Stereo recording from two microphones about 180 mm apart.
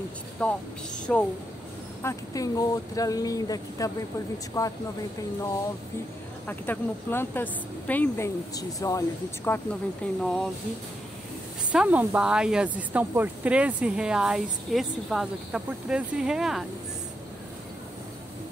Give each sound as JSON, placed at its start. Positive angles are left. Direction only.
{"t": 0.4, "sound": "speech", "side_deg": 5}
{"t": 2.0, "sound": "speech", "side_deg": 20}
{"t": 6.4, "sound": "speech", "side_deg": 10}
{"t": 10.2, "sound": "speech", "side_deg": 0}
{"t": 11.7, "sound": "speech", "side_deg": -5}